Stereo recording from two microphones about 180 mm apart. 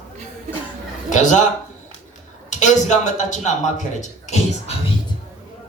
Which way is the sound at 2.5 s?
45° left (ahead or behind).